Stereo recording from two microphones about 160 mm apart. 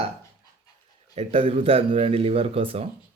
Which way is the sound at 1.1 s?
40° right (ahead or behind).